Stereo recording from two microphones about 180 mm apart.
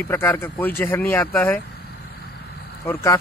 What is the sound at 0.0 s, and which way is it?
Speech, 15° left (ahead or behind).